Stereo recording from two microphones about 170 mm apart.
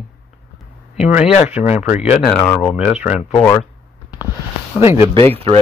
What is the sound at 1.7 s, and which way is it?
Speech, 40° left (ahead or behind).